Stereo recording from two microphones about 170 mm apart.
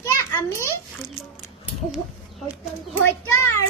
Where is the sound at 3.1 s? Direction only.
15° left (ahead or behind).